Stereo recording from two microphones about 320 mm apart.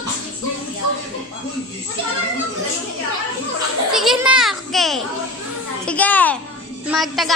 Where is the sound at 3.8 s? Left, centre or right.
Centre.